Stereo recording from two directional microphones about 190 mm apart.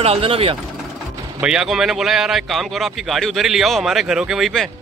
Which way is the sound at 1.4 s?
5° right (ahead or behind).